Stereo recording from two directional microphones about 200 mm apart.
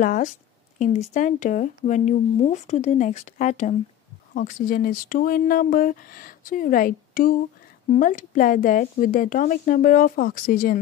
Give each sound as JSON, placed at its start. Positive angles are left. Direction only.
{"t": 0.0, "sound": "speech", "side_deg": 40}